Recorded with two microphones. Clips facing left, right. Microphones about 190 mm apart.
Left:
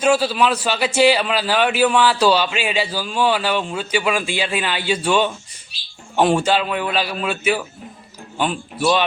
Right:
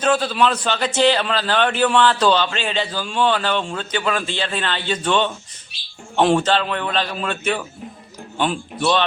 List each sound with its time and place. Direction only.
0.0 s a man's voice: 10° left (ahead or behind)